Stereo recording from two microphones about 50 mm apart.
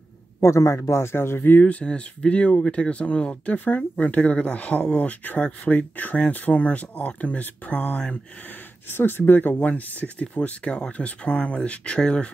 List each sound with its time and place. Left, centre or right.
0.4 s speech: left
1.7 s speech: left
8.9 s speech: left